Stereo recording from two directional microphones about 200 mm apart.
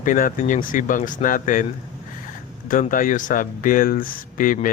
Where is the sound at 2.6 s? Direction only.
40° left (ahead or behind).